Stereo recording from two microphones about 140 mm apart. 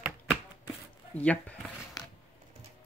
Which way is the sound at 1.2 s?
10° left (ahead or behind).